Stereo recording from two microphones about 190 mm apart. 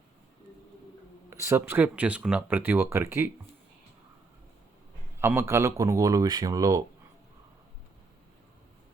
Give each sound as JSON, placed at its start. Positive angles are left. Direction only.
{"t": 1.3, "sound": "speech", "side_deg": -15}
{"t": 5.2, "sound": "speech", "side_deg": -15}